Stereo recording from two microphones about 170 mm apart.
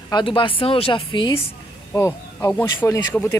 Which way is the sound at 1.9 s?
20° left (ahead or behind).